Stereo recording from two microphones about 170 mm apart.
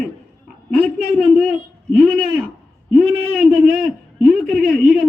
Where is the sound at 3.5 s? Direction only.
5° right (ahead or behind).